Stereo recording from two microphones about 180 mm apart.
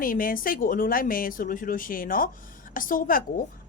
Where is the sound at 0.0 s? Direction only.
50° left (ahead or behind).